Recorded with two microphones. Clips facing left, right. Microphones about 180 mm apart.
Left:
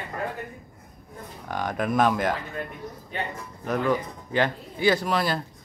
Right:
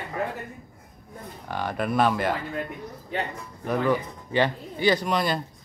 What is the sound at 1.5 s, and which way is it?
Speech, 5° right (ahead or behind).